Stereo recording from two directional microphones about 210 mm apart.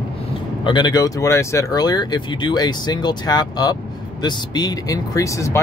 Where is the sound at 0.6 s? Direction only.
20° left (ahead or behind).